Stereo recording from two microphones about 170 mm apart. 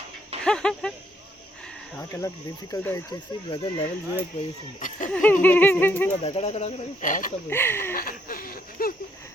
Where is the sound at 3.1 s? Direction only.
30° left (ahead or behind).